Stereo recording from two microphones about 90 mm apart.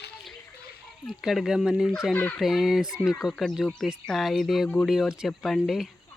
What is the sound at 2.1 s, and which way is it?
Speech, 20° left (ahead or behind).